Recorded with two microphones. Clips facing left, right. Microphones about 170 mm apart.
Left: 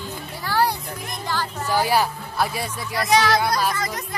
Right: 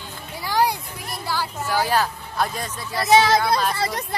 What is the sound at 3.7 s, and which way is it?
Speech, 30° right (ahead or behind).